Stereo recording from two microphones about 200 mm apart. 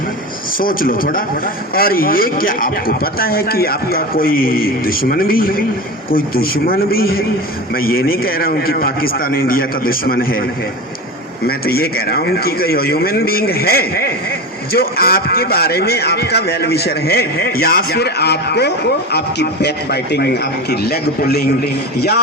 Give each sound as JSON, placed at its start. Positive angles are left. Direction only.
{"t": 0.6, "sound": "speech", "side_deg": 45}
{"t": 11.4, "sound": "speech", "side_deg": 50}